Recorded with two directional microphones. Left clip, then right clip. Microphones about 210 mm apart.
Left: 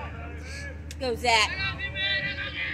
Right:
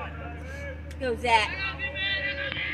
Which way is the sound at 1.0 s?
15° left (ahead or behind).